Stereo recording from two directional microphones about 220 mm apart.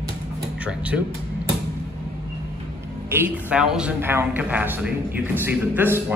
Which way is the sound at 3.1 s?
10° right (ahead or behind).